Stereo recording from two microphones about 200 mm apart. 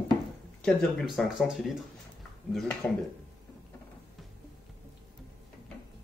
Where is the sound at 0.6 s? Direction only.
Centre (ahead or behind).